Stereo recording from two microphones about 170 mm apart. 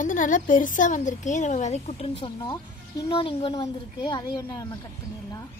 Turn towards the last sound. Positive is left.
turn(degrees=20)  # may be behind; listen again after turning